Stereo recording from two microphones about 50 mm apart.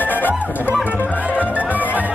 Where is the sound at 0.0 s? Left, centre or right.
Left.